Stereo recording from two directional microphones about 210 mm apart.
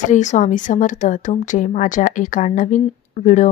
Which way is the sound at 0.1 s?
35° left (ahead or behind).